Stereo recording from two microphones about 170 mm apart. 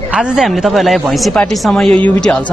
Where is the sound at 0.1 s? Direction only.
5° right (ahead or behind).